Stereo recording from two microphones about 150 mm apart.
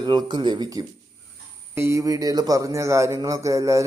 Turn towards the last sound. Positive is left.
turn(degrees=-20)  # may be behind; listen again after turning